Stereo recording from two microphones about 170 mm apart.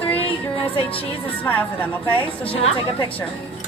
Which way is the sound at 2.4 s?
35° left (ahead or behind).